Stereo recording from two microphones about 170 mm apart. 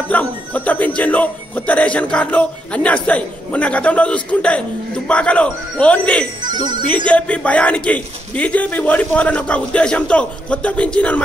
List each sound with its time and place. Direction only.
0.1 s speech: 10° left (ahead or behind)
6.4 s speech: 25° right (ahead or behind)
7.1 s speech: 5° left (ahead or behind)